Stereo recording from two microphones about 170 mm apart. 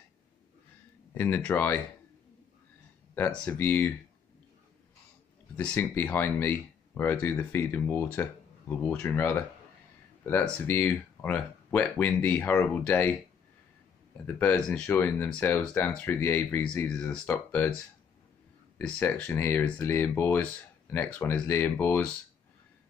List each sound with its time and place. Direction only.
1.1 s speech: 15° left (ahead or behind)
3.2 s speech: 10° left (ahead or behind)
5.6 s speech: 10° left (ahead or behind)
14.2 s speech: 10° left (ahead or behind)
18.8 s speech: 10° left (ahead or behind)